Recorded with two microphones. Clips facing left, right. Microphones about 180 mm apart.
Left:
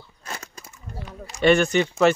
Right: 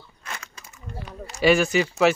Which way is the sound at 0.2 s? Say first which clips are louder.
Left 2 dB; 35° left (ahead or behind).